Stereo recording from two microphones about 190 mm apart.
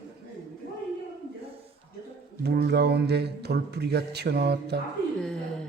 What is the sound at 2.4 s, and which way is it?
Speech, 60° right (ahead or behind).